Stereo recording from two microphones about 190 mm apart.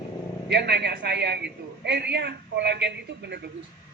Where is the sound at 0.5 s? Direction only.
60° right (ahead or behind).